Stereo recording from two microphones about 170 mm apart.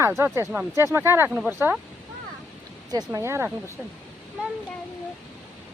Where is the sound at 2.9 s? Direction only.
15° right (ahead or behind).